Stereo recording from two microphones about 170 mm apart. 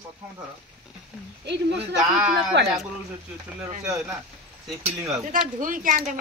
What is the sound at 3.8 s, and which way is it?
A woman's voice, 5° right (ahead or behind).